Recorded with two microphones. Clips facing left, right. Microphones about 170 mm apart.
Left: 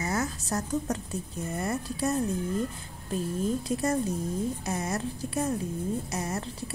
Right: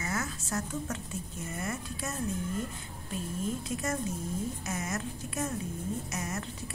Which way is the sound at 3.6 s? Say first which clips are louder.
Left 6 dB; 35° left (ahead or behind).